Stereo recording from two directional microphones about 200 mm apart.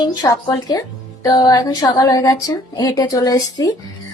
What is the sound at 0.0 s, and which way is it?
Speech, 20° left (ahead or behind).